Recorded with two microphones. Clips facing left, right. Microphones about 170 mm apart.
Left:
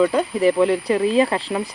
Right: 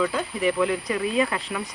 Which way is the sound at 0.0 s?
35° left (ahead or behind).